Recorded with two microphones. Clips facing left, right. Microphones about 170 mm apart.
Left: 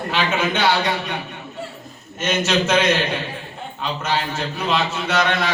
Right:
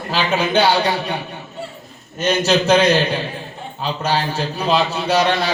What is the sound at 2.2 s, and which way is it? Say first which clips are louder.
A man's voice: right 3 dB; 35° right (ahead or behind).